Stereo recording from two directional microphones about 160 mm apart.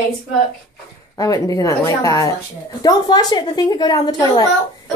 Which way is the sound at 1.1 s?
20° left (ahead or behind).